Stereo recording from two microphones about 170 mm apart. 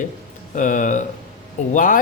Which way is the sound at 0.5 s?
50° left (ahead or behind).